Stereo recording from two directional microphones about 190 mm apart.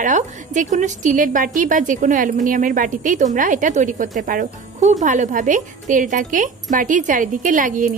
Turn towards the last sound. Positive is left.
turn(degrees=-45)  # may be behind; listen again after turning